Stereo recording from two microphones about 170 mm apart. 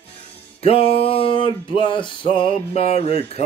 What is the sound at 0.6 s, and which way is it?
Music, 35° left (ahead or behind).